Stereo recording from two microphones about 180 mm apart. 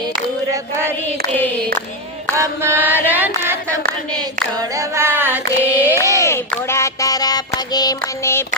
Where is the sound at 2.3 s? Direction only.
15° right (ahead or behind).